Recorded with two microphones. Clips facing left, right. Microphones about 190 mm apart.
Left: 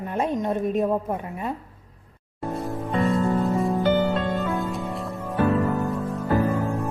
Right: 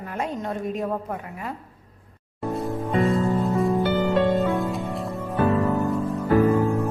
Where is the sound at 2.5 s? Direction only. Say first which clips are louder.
Right 2 dB; centre (ahead or behind).